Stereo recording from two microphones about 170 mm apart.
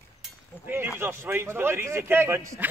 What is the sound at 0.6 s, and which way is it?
A man's voice, 15° right (ahead or behind).